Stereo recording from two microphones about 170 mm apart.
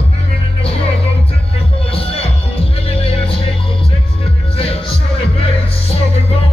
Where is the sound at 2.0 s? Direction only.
35° left (ahead or behind).